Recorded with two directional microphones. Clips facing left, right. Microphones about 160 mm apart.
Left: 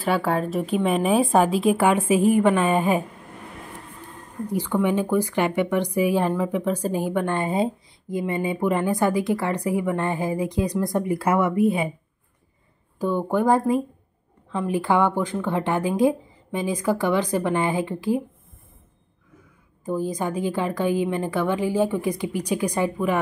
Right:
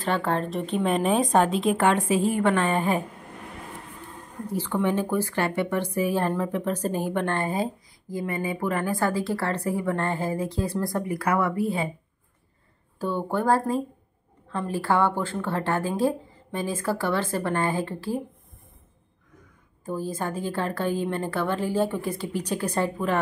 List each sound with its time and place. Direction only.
0.0 s speech: 5° left (ahead or behind)
4.5 s speech: 10° left (ahead or behind)
13.0 s speech: 15° left (ahead or behind)
19.8 s speech: 15° left (ahead or behind)